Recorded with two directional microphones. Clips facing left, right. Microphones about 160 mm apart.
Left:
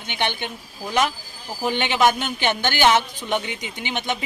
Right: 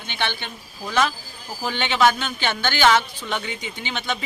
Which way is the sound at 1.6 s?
15° left (ahead or behind).